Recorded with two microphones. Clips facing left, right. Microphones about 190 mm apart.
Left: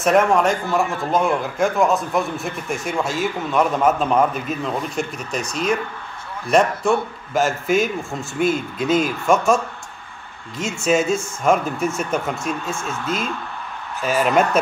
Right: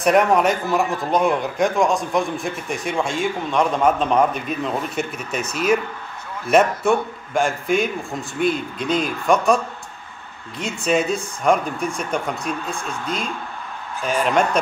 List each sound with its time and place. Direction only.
0.3 s a man's voice: 20° right (ahead or behind)
1.1 s a man's voice: centre (ahead or behind)
10.6 s a man's voice: centre (ahead or behind)